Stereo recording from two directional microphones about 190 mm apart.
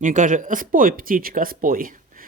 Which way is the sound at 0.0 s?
40° right (ahead or behind).